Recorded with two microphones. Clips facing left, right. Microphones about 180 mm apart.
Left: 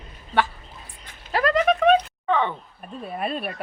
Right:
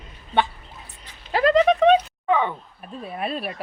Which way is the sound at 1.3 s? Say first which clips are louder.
Right 3 dB; 25° right (ahead or behind).